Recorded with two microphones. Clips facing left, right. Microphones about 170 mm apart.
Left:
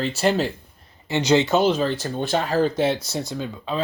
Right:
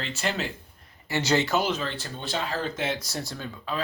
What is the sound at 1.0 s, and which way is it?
Speech, 20° left (ahead or behind).